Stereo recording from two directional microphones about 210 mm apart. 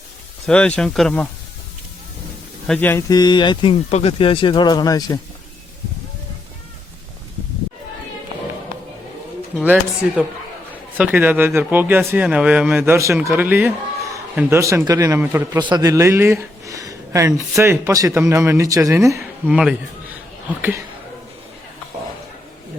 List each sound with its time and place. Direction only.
0.4 s speech: 5° left (ahead or behind)
2.6 s speech: 10° left (ahead or behind)
9.6 s speech: 5° right (ahead or behind)